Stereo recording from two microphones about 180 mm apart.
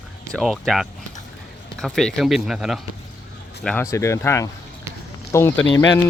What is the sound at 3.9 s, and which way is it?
Speech, 15° left (ahead or behind).